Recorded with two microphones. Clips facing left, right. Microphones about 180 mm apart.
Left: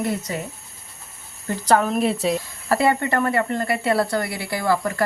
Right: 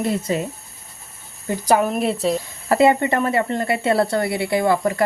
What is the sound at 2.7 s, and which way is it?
Speech, 20° right (ahead or behind).